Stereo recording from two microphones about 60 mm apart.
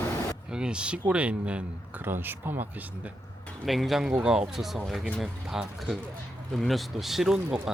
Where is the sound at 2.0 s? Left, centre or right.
Right.